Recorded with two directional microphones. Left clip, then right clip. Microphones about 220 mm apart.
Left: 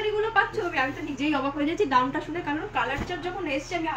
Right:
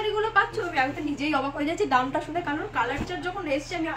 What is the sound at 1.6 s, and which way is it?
Speech, 10° right (ahead or behind).